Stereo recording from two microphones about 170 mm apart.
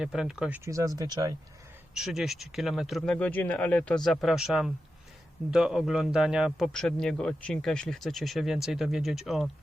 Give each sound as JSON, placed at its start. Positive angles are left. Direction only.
{"t": 0.0, "sound": "a man's voice", "side_deg": -5}
{"t": 0.6, "sound": "speech", "side_deg": -20}
{"t": 2.0, "sound": "a man's voice", "side_deg": 0}